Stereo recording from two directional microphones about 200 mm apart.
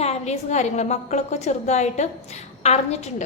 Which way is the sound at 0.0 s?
35° left (ahead or behind).